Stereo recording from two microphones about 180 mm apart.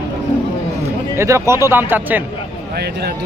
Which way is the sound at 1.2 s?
15° right (ahead or behind).